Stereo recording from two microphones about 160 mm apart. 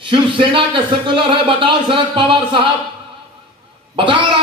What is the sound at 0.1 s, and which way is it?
A man's voice, 30° right (ahead or behind).